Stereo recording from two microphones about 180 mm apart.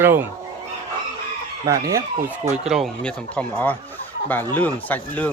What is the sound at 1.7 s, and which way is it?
Speech, 20° right (ahead or behind).